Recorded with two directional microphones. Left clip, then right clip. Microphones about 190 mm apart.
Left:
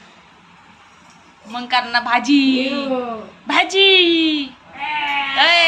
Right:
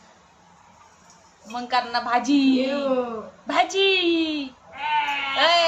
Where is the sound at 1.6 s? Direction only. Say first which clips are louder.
Left 6 dB; 15° right (ahead or behind).